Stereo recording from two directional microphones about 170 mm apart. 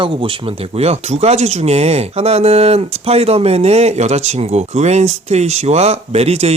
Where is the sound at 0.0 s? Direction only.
30° right (ahead or behind).